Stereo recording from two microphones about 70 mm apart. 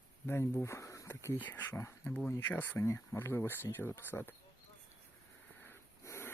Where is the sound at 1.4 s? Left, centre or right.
Left.